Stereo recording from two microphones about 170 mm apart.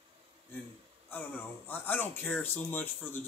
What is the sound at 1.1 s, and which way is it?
Speech, 10° left (ahead or behind).